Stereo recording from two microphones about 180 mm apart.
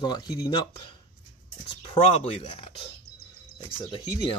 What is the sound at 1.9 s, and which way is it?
Speech, 35° left (ahead or behind).